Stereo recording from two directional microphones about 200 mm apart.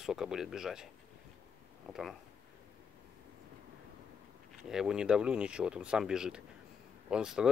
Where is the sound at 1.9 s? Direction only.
Centre (ahead or behind).